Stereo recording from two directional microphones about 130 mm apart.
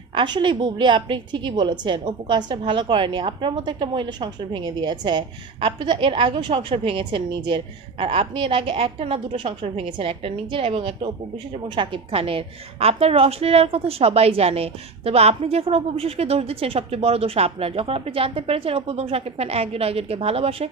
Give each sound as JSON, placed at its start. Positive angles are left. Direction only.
{"t": 0.1, "sound": "a woman's voice", "side_deg": -35}